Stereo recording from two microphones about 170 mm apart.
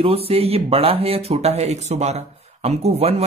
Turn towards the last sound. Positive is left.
turn(degrees=-35)  # may be behind; listen again after turning